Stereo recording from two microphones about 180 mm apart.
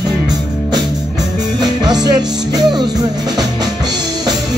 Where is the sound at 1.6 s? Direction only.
20° right (ahead or behind).